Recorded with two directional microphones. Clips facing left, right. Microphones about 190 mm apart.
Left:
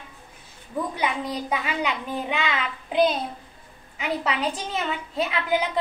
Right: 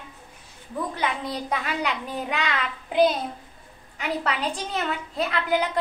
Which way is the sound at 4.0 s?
Centre (ahead or behind).